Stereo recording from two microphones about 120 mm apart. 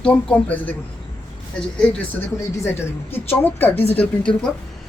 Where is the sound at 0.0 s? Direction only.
10° left (ahead or behind).